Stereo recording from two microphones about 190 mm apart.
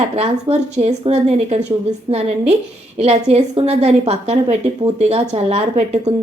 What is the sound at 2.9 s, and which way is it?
Speech, 35° right (ahead or behind).